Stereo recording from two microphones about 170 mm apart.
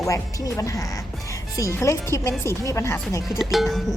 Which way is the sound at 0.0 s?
20° left (ahead or behind).